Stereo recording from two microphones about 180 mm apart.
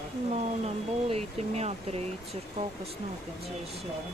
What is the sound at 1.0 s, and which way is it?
Speech, 35° right (ahead or behind).